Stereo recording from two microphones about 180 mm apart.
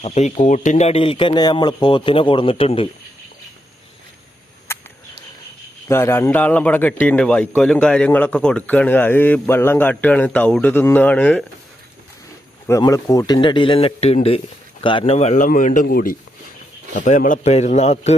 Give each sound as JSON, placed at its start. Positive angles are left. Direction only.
{"t": 0.0, "sound": "speech", "side_deg": 40}
{"t": 4.7, "sound": "a sound", "side_deg": 15}
{"t": 5.9, "sound": "a man's voice", "side_deg": 15}
{"t": 12.6, "sound": "speech", "side_deg": 15}